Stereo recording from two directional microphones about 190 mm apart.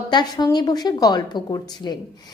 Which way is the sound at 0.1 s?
20° left (ahead or behind).